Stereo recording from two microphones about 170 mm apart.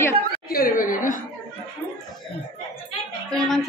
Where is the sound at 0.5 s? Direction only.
55° left (ahead or behind).